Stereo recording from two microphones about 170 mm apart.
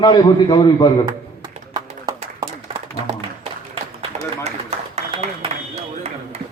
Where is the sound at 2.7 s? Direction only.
35° right (ahead or behind).